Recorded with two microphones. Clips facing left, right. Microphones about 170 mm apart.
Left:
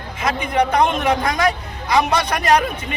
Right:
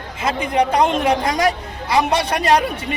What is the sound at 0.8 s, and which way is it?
Speech, 30° right (ahead or behind).